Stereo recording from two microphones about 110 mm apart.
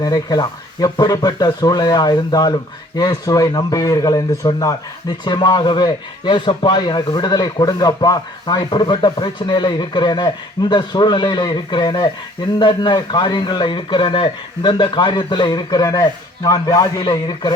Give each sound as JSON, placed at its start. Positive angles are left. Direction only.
{"t": 0.0, "sound": "speech", "side_deg": 35}